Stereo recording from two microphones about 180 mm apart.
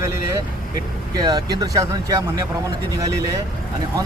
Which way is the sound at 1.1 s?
20° right (ahead or behind).